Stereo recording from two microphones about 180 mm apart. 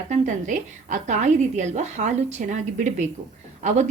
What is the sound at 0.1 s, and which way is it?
A woman's voice, 45° right (ahead or behind).